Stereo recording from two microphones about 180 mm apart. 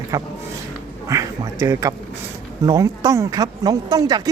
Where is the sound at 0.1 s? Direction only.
20° right (ahead or behind).